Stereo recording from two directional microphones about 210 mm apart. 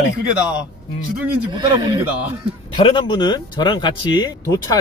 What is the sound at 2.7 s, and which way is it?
Speech, 25° left (ahead or behind).